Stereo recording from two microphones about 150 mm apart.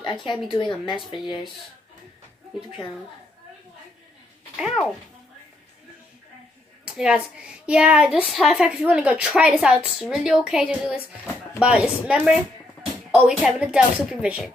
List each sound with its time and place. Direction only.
0.0 s a woman's voice: 35° left (ahead or behind)
4.6 s speech: 5° right (ahead or behind)
6.8 s a woman's voice: 5° right (ahead or behind)